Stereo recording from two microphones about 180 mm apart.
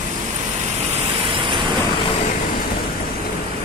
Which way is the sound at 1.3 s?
30° right (ahead or behind).